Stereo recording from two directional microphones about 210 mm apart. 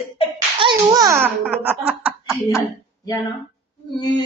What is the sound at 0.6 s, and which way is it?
A child's voice, 20° right (ahead or behind).